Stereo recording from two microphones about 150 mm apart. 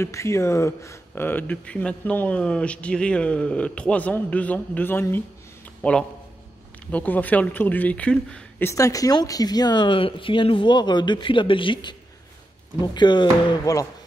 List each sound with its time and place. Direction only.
0.0 s a man's voice: 20° left (ahead or behind)
12.9 s speech: 30° left (ahead or behind)